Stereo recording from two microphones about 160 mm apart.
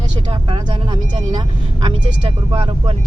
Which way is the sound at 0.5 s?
30° right (ahead or behind).